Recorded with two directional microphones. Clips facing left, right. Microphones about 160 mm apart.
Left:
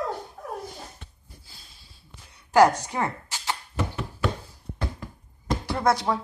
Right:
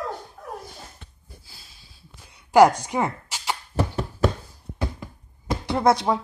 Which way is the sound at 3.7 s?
35° right (ahead or behind).